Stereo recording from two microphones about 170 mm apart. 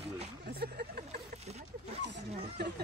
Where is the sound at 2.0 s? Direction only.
90° right.